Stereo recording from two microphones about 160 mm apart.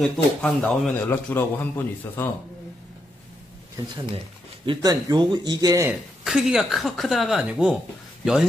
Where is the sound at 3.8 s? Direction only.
30° right (ahead or behind).